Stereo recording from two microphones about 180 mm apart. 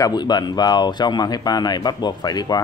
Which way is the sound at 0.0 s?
25° left (ahead or behind).